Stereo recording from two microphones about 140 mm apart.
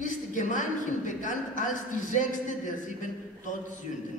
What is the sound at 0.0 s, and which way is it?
A woman's voice, 65° left (ahead or behind).